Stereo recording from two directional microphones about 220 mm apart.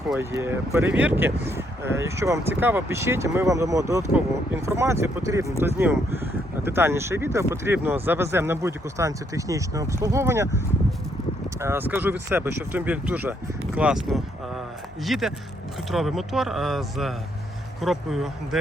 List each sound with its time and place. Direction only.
0.1 s speech: 10° right (ahead or behind)
11.6 s speech: 10° right (ahead or behind)